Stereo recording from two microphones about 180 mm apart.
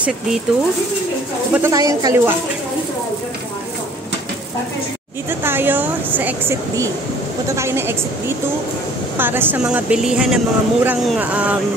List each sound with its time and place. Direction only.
1.5 s speech: 15° right (ahead or behind)
5.4 s speech: 10° right (ahead or behind)